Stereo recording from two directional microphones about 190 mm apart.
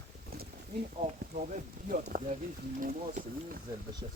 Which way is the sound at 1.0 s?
40° right (ahead or behind).